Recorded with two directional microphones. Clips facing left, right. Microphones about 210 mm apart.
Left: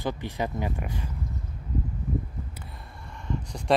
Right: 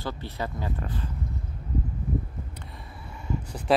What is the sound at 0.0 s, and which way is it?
Speech, 15° left (ahead or behind).